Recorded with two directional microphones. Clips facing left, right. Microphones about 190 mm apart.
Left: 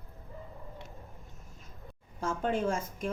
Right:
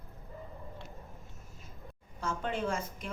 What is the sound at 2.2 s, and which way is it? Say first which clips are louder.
Speech: left 4 dB; 45° left (ahead or behind).